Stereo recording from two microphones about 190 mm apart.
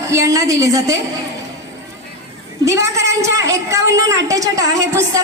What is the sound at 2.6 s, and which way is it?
A woman's voice, 15° right (ahead or behind).